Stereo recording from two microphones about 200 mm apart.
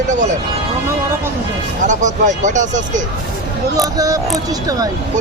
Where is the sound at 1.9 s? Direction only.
40° right (ahead or behind).